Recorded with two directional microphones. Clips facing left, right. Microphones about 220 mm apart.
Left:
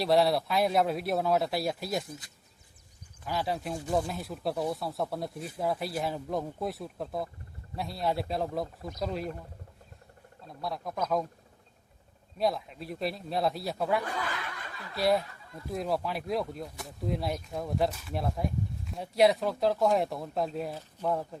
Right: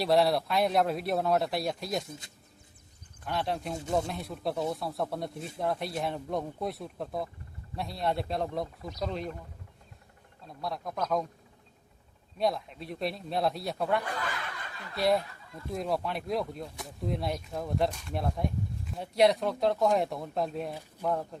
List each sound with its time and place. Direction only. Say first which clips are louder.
0.0 s speech: even; centre (ahead or behind)
2.0 s speech: left 1 dB; 25° right (ahead or behind)
3.2 s speech: even; centre (ahead or behind)
10.4 s speech: even; centre (ahead or behind)
12.4 s speech: even; centre (ahead or behind)